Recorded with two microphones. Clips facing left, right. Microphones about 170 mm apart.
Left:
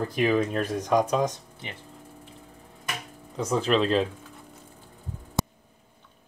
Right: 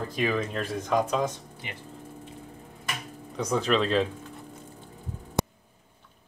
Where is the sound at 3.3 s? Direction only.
Centre (ahead or behind).